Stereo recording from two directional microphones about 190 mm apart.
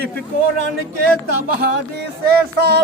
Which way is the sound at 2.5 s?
55° right (ahead or behind).